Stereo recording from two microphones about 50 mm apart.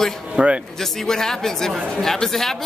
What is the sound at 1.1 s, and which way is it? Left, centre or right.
A man's voice, centre.